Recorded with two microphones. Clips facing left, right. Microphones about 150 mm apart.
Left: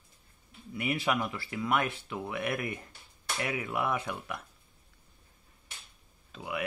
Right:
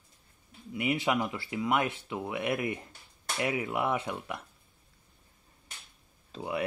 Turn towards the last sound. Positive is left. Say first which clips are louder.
# right 3 dB
turn(degrees=-30)  # may be behind; listen again after turning